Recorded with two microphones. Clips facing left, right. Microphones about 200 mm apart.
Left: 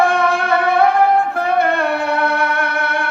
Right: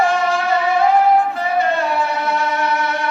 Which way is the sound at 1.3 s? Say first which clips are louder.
Left 2 dB; 60° left (ahead or behind).